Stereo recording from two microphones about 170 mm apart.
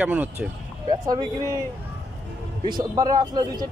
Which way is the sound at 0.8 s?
25° right (ahead or behind).